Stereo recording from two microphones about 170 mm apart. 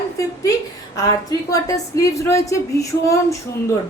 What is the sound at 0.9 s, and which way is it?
A woman's voice, 20° left (ahead or behind).